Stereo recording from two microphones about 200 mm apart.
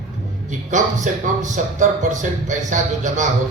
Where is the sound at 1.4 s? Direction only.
40° right (ahead or behind).